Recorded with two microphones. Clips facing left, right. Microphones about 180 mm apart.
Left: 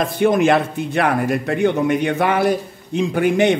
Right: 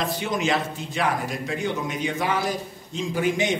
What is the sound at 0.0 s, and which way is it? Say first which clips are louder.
A man's voice: left 10 dB; 55° left (ahead or behind).